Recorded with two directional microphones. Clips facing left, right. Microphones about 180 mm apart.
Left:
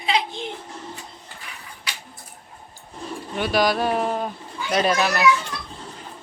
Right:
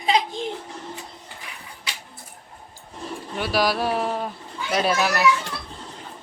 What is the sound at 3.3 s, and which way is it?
Speech, 5° right (ahead or behind).